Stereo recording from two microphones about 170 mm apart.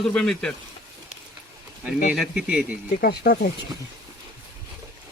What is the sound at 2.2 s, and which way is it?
Speech, 5° right (ahead or behind).